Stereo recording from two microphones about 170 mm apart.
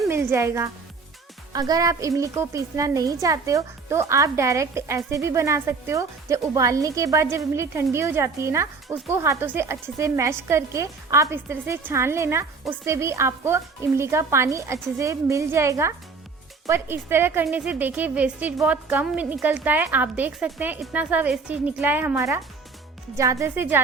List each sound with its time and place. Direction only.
0.1 s a woman's voice: 15° right (ahead or behind)